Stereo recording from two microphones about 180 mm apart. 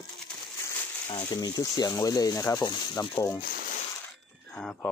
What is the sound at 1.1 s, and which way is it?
Speech, 20° left (ahead or behind).